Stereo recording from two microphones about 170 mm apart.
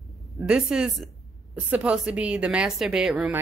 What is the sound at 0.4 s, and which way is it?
A woman's voice, 5° right (ahead or behind).